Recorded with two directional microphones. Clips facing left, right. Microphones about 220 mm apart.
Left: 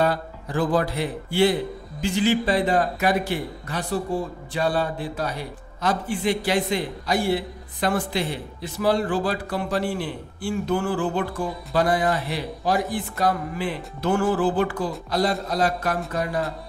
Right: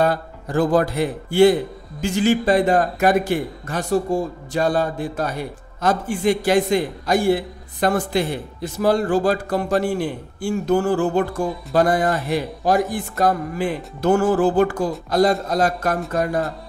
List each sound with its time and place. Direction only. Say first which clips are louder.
0.0 s a man's voice: right 3 dB; 45° right (ahead or behind)